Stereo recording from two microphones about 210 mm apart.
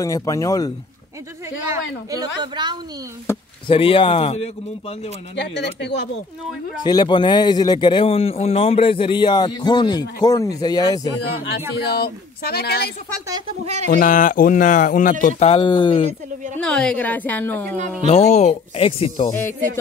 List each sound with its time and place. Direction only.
0.0 s a woman's voice: 15° left (ahead or behind)
1.7 s speech: 15° right (ahead or behind)
3.3 s speech: 25° left (ahead or behind)
5.3 s speech: 55° left (ahead or behind)
6.8 s a woman's voice: 20° left (ahead or behind)
11.7 s speech: 50° left (ahead or behind)
13.3 s speech: 30° right (ahead or behind)
13.9 s speech: 40° left (ahead or behind); by 16.1 s 25° left (ahead or behind)
16.5 s a woman's voice: 5° left (ahead or behind)
18.0 s speech: 30° left (ahead or behind)
19.3 s a woman's voice: 10° left (ahead or behind)